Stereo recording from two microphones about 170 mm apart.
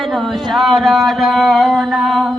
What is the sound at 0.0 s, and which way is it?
Speech, centre (ahead or behind).